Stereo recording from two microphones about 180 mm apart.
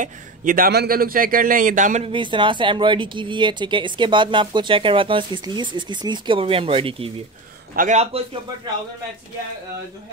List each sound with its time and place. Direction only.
0.0 s a man's voice: 45° right (ahead or behind)
2.0 s speech: 25° right (ahead or behind)
7.7 s a man's voice: 45° right (ahead or behind)